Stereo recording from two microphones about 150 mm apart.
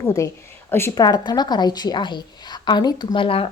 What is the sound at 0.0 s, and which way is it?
A woman's voice, 20° left (ahead or behind).